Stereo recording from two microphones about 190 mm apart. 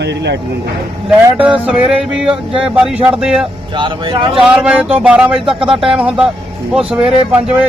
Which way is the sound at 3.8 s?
25° right (ahead or behind).